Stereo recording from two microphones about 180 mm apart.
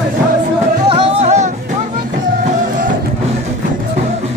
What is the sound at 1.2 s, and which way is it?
Music, 40° right (ahead or behind).